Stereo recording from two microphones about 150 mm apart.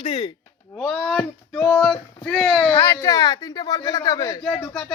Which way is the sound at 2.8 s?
20° left (ahead or behind).